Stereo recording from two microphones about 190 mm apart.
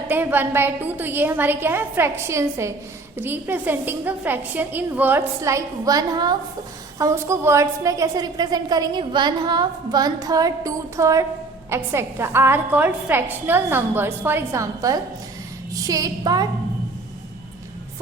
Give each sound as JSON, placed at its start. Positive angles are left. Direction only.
{"t": 0.1, "sound": "a woman's voice", "side_deg": -10}